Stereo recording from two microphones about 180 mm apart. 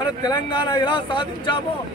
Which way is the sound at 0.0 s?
20° left (ahead or behind).